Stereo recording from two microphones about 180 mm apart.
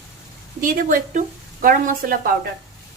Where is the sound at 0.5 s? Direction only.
50° right (ahead or behind).